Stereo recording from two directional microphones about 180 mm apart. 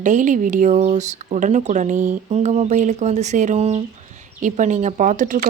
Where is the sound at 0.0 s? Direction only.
45° right (ahead or behind).